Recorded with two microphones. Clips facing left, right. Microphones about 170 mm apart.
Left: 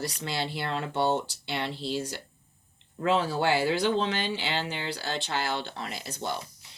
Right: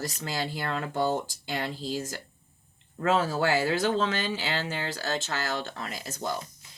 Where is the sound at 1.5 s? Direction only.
40° right (ahead or behind).